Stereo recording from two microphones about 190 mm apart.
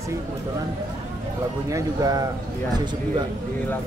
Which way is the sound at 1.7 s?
20° right (ahead or behind).